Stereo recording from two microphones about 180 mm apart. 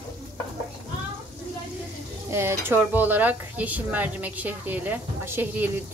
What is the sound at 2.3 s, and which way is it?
Speech, 15° right (ahead or behind).